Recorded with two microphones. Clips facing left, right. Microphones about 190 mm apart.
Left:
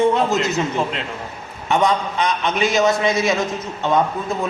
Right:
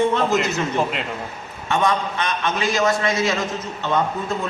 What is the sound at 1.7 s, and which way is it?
A man's voice, 15° left (ahead or behind).